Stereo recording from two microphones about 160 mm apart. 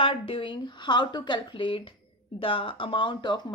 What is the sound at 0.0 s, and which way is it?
Speech, 35° left (ahead or behind).